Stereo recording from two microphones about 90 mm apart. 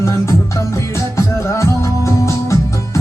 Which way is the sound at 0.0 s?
35° left (ahead or behind).